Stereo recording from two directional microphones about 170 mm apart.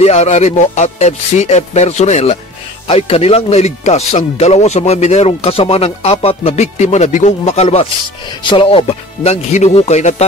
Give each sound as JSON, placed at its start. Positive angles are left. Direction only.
{"t": 0.0, "sound": "speech", "side_deg": 40}